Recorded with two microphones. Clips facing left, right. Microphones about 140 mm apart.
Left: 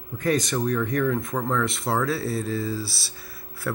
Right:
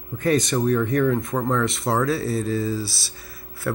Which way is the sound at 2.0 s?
5° left (ahead or behind).